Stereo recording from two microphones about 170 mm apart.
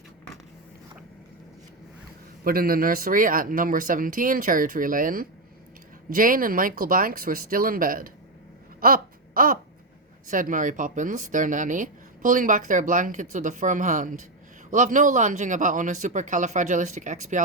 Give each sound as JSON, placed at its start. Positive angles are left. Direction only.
{"t": 2.4, "sound": "speech", "side_deg": -60}
{"t": 8.8, "sound": "a sound", "side_deg": -60}
{"t": 10.2, "sound": "speech", "side_deg": -50}